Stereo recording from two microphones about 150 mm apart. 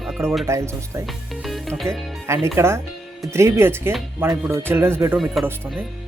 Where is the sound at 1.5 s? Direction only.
Centre (ahead or behind).